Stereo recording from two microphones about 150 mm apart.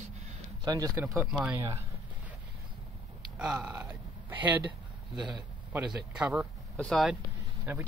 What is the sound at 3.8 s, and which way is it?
Speech, 15° right (ahead or behind).